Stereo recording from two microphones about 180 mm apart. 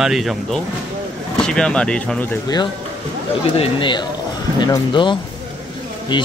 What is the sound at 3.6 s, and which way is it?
Speech, 25° left (ahead or behind).